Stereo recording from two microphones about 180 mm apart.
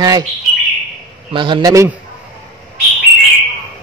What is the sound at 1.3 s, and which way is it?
Speech, 25° right (ahead or behind).